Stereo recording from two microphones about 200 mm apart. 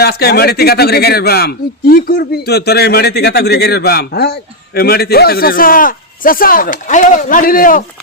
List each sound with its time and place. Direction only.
0.0 s a man's voice: 50° left (ahead or behind)